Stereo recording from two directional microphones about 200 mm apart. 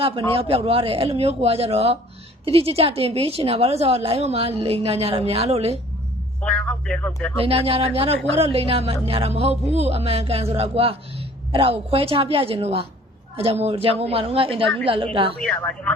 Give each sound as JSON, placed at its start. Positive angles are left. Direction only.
{"t": 0.0, "sound": "a woman's voice", "side_deg": -30}
{"t": 6.4, "sound": "speech", "side_deg": 5}
{"t": 7.3, "sound": "a woman's voice", "side_deg": -30}
{"t": 15.4, "sound": "speech", "side_deg": 5}